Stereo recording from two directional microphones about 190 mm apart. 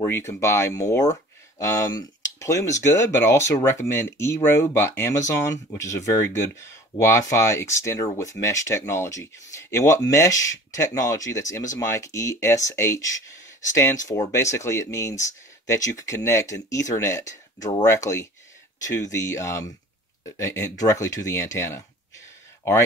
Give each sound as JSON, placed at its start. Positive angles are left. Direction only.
{"t": 0.0, "sound": "speech", "side_deg": 10}